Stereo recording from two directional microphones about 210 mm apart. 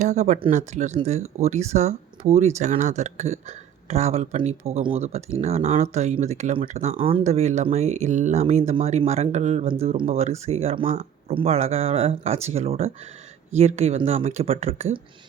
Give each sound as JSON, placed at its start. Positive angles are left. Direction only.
{"t": 0.0, "sound": "speech", "side_deg": -35}